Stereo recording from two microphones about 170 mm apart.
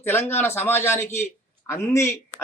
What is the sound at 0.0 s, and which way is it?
A man's voice, 15° left (ahead or behind).